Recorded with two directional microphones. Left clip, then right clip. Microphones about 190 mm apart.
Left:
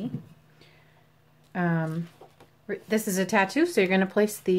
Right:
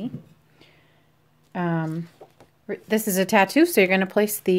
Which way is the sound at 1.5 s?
35° right (ahead or behind).